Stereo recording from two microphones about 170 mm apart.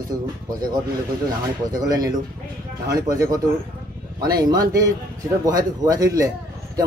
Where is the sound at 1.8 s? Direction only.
20° right (ahead or behind).